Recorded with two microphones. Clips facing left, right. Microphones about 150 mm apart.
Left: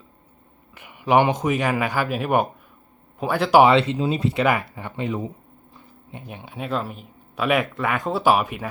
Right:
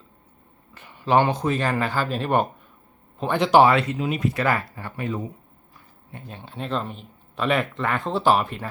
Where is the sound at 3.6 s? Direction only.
25° left (ahead or behind).